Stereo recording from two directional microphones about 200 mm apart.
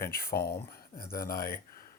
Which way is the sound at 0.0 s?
50° left (ahead or behind).